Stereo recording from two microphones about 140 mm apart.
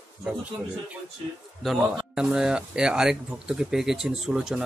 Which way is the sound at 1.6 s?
5° right (ahead or behind).